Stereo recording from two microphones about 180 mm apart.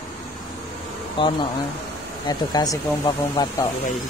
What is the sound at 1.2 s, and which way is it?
Music, 25° left (ahead or behind).